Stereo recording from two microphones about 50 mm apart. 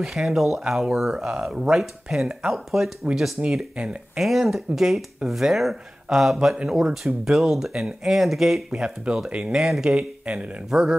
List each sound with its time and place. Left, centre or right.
0.0 s speech: centre
1.1 s speech: centre
3.4 s speech: right
4.2 s speech: centre; by 10.5 s right
10.7 s speech: centre